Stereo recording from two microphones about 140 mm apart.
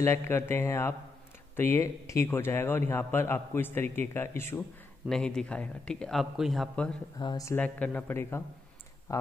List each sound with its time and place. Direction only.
0.0 s speech: 20° left (ahead or behind)
5.1 s speech: 5° left (ahead or behind)
7.2 s speech: 25° left (ahead or behind)
7.5 s speech: 10° left (ahead or behind)